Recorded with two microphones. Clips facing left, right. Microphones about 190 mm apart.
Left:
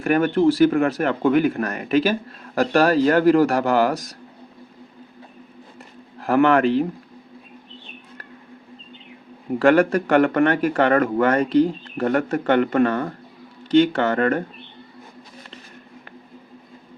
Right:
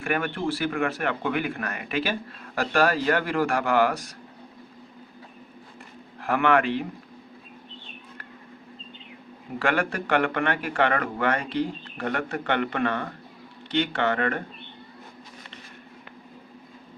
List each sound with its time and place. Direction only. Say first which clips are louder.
0.0 s speech: left 10 dB; 40° left (ahead or behind)
6.1 s speech: left 6 dB; 40° left (ahead or behind)
9.6 s speech: left 10 dB; 40° left (ahead or behind)